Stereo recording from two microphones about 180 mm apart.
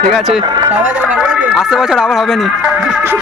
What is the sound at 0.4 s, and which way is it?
Speech, 25° right (ahead or behind).